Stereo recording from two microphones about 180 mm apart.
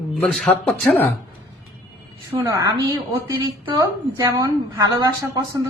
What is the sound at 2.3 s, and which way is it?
Speech, 15° right (ahead or behind).